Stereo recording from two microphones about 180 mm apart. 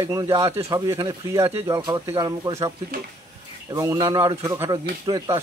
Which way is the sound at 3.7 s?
20° right (ahead or behind).